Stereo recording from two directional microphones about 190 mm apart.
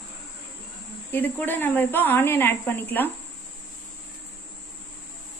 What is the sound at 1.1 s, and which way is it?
Speech, 10° left (ahead or behind).